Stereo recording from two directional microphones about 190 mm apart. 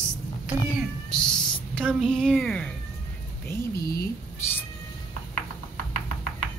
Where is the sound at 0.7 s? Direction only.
5° left (ahead or behind).